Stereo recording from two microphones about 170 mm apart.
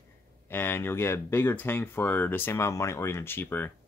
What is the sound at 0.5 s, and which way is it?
Speech, 15° left (ahead or behind).